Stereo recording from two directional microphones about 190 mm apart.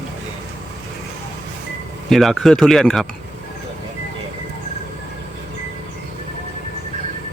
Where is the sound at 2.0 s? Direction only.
Centre (ahead or behind).